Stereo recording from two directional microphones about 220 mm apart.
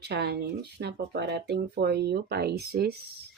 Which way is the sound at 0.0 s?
50° right (ahead or behind).